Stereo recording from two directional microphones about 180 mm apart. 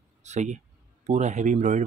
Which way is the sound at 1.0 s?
40° right (ahead or behind).